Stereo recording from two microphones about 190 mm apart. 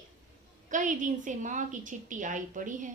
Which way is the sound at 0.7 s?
40° right (ahead or behind).